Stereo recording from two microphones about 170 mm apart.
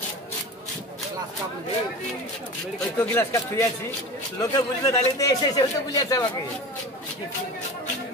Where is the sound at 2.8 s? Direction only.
10° left (ahead or behind).